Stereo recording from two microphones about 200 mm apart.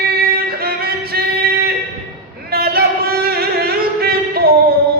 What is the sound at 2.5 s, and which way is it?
Music, 50° right (ahead or behind).